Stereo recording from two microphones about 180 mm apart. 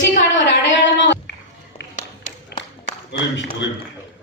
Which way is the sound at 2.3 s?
45° left (ahead or behind).